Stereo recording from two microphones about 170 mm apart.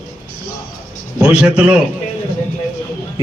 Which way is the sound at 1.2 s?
5° right (ahead or behind).